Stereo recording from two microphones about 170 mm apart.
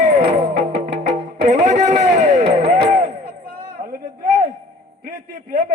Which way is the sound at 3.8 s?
45° right (ahead or behind).